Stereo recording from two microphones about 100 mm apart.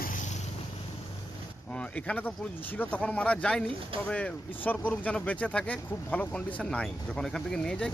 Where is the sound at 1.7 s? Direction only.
10° left (ahead or behind).